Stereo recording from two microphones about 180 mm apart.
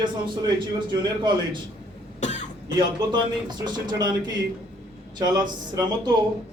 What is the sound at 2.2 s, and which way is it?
Cough, 40° left (ahead or behind).